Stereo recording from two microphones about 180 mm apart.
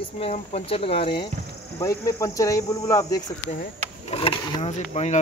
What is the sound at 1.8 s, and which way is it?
Speech, 15° left (ahead or behind).